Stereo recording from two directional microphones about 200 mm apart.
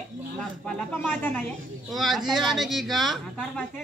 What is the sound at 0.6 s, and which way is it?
Speech, 10° left (ahead or behind).